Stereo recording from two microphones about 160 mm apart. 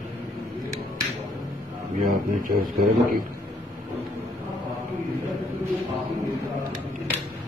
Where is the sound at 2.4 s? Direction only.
65° right (ahead or behind).